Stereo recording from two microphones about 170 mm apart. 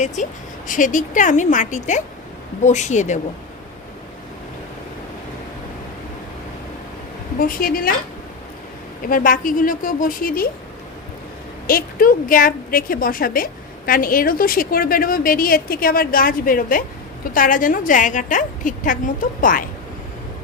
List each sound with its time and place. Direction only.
0.7 s a woman's voice: 50° left (ahead or behind)
7.3 s a woman's voice: 55° left (ahead or behind)
9.0 s a woman's voice: 55° left (ahead or behind)
11.6 s a woman's voice: 60° left (ahead or behind)